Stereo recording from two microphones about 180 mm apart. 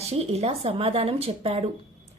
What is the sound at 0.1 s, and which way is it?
A woman's voice, 35° right (ahead or behind).